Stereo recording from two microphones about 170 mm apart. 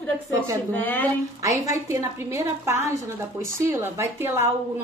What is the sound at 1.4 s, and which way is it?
A woman's voice, 15° right (ahead or behind).